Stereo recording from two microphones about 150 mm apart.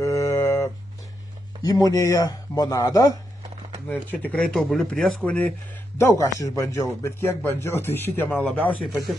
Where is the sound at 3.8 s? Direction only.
10° left (ahead or behind).